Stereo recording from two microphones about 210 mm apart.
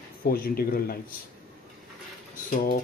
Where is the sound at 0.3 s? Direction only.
45° left (ahead or behind).